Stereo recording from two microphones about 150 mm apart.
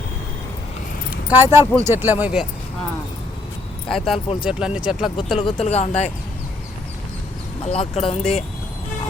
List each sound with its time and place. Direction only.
1.1 s keys jangling: 15° right (ahead or behind)
1.8 s speech: 15° right (ahead or behind)
3.8 s speech: centre (ahead or behind)
5.4 s speech: 40° left (ahead or behind)
7.6 s speech: 40° left (ahead or behind)